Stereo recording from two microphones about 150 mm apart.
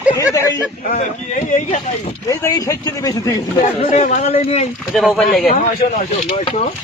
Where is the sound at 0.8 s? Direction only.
50° left (ahead or behind).